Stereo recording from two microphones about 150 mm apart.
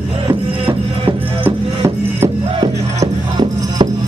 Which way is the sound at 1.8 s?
25° right (ahead or behind).